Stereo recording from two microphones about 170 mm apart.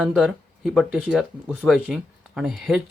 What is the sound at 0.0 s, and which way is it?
Speech, centre (ahead or behind).